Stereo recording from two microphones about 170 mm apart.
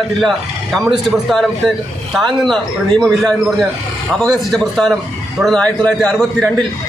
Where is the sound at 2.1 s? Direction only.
Centre (ahead or behind).